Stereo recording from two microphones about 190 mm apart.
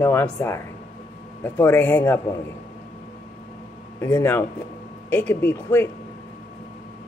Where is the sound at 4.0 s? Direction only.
10° left (ahead or behind).